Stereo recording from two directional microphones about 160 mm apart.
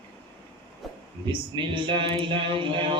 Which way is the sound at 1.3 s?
30° right (ahead or behind).